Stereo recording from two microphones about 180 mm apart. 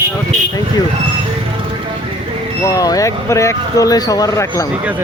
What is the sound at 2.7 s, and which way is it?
Speech, 20° left (ahead or behind).